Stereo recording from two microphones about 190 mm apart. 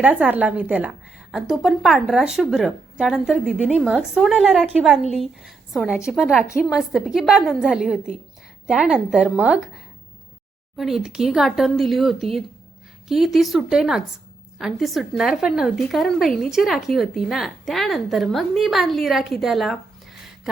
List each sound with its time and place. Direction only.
0.0 s a woman's voice: 10° right (ahead or behind)